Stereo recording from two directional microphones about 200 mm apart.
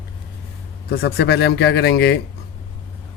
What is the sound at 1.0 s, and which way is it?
Speech, 55° left (ahead or behind).